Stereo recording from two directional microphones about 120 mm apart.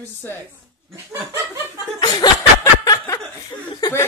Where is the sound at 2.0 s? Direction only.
35° left (ahead or behind).